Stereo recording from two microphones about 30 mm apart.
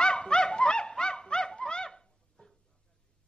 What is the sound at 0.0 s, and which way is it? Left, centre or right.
Dog, left.